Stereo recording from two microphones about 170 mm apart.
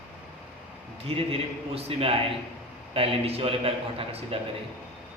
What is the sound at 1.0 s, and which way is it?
A man's voice, 35° right (ahead or behind).